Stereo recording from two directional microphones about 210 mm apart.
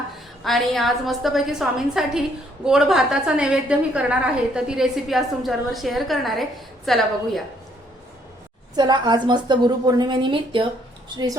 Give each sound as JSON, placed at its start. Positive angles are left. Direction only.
{"t": 0.4, "sound": "a woman's voice", "side_deg": 0}
{"t": 8.7, "sound": "a woman's voice", "side_deg": -20}